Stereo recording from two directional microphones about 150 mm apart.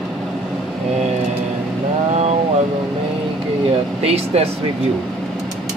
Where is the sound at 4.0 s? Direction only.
45° right (ahead or behind).